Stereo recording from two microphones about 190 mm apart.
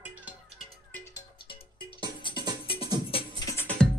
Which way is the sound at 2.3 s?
25° left (ahead or behind).